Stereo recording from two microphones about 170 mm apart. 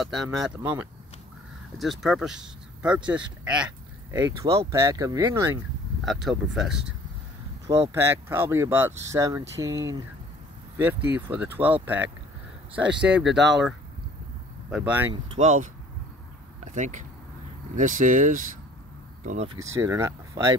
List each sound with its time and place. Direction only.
0.0 s speech: centre (ahead or behind); by 5.6 s 15° right (ahead or behind)
6.0 s speech: centre (ahead or behind)
7.6 s speech: 35° right (ahead or behind)
7.9 s speech: 15° right (ahead or behind)
13.1 s speech: centre (ahead or behind)
14.7 s speech: 10° right (ahead or behind)
15.3 s speech: 45° right (ahead or behind)
19.5 s speech: 15° right (ahead or behind)